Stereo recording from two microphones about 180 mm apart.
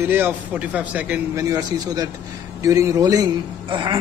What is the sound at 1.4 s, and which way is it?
A man's voice, 20° right (ahead or behind).